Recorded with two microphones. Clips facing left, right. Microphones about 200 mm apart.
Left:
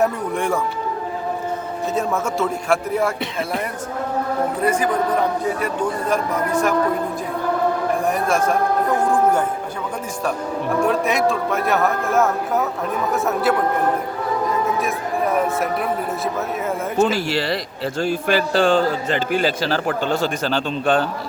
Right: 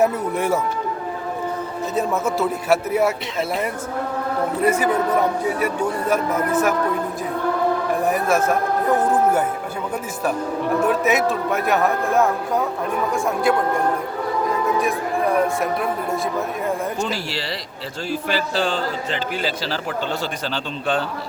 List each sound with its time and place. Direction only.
0.0 s a man's voice: 5° right (ahead or behind)
2.0 s a man's voice: centre (ahead or behind)
4.6 s a man's voice: 10° right (ahead or behind)
8.1 s a man's voice: 5° right (ahead or behind)
10.8 s a man's voice: 5° right (ahead or behind)
14.8 s a man's voice: centre (ahead or behind)
17.1 s a man's voice: 50° left (ahead or behind)